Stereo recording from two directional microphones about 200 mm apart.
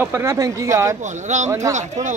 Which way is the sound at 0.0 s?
10° right (ahead or behind).